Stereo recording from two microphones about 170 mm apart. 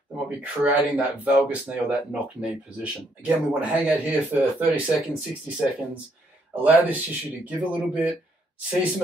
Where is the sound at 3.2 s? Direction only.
10° right (ahead or behind).